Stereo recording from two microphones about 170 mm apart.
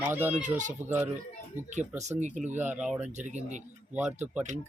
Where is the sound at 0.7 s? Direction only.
10° right (ahead or behind).